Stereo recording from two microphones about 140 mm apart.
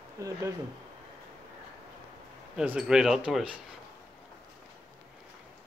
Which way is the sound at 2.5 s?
5° right (ahead or behind).